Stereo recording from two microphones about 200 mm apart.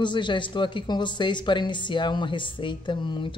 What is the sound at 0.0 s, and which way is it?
A woman's voice, 25° left (ahead or behind).